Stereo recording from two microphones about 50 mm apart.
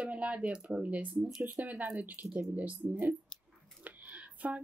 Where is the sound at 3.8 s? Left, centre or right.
Right.